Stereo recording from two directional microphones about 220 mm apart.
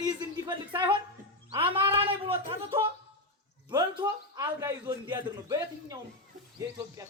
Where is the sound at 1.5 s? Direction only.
20° right (ahead or behind).